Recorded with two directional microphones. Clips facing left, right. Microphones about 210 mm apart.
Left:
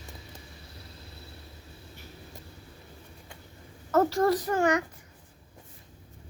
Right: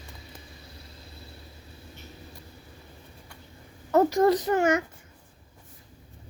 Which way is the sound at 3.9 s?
15° right (ahead or behind).